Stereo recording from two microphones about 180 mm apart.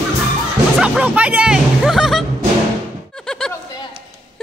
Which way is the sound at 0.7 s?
5° right (ahead or behind).